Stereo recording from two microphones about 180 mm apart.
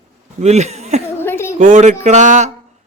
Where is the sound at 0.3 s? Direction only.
40° right (ahead or behind).